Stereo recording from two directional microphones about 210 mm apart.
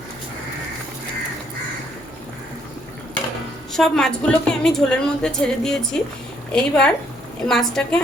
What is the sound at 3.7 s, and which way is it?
A woman's voice, centre (ahead or behind).